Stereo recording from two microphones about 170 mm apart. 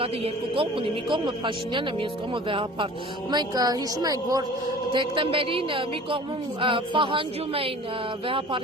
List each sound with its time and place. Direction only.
0.5 s a woman's voice: 30° right (ahead or behind)